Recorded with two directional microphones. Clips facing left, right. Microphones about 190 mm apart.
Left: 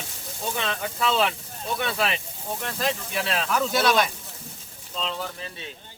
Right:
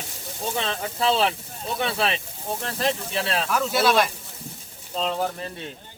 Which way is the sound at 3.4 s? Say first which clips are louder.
Even; centre (ahead or behind).